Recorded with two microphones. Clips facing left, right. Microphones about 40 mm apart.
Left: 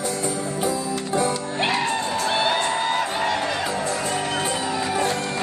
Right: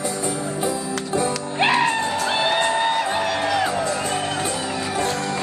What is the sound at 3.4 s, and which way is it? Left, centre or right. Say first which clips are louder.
Music: right 3 dB; right.